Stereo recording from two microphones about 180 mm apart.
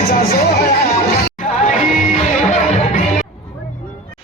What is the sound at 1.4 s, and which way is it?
Music, 45° left (ahead or behind).